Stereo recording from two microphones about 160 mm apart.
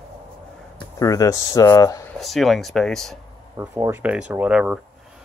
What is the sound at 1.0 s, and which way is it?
Speech, 20° left (ahead or behind).